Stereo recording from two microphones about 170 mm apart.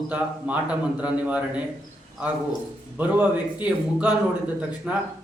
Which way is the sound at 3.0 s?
10° right (ahead or behind).